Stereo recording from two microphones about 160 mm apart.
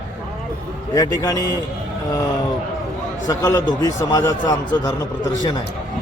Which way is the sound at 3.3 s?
20° left (ahead or behind).